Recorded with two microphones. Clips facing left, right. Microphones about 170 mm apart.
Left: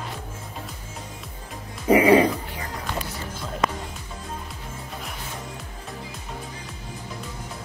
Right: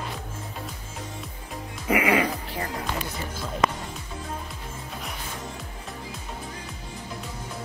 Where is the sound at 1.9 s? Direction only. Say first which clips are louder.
Left 7 dB; 35° left (ahead or behind).